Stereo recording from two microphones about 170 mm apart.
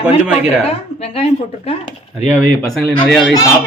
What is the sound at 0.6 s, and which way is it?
A woman's voice, 35° left (ahead or behind).